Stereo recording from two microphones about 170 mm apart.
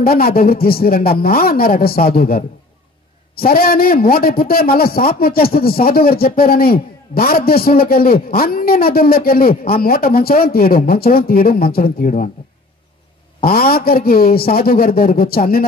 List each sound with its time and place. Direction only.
0.0 s a man's voice: 60° left (ahead or behind)
13.4 s a man's voice: 60° left (ahead or behind)